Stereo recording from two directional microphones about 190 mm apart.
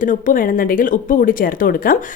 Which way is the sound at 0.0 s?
45° left (ahead or behind).